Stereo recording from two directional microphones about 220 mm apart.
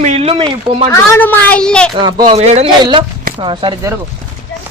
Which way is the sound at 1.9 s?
20° right (ahead or behind).